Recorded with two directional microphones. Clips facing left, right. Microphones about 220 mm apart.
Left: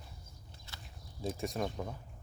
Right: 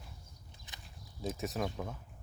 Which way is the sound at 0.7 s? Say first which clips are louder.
Left 2 dB; 15° right (ahead or behind).